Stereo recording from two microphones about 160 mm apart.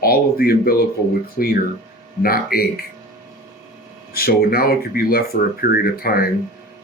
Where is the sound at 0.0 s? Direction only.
70° left (ahead or behind).